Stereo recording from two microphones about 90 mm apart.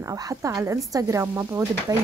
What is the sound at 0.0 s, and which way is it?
Speech, 35° right (ahead or behind).